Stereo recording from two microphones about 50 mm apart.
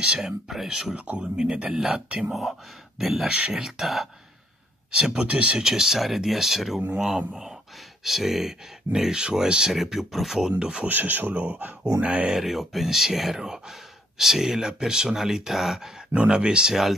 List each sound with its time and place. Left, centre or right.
0.0 s speech: centre
0.5 s speech: centre
0.9 s speech: right
1.3 s speech: centre
2.0 s speech: centre
3.0 s speech: centre
3.3 s speech: centre
4.9 s speech: centre
5.6 s speech: centre
8.0 s speech: centre
10.6 s speech: centre
10.9 s speech: right
12.3 s speech: centre
16.3 s speech: centre